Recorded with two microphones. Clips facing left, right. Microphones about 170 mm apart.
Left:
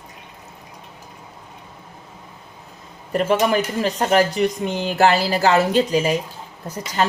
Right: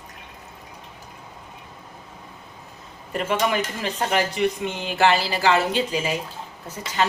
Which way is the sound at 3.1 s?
35° left (ahead or behind).